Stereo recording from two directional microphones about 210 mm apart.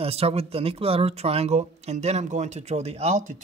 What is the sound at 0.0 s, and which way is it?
Speech, 30° right (ahead or behind).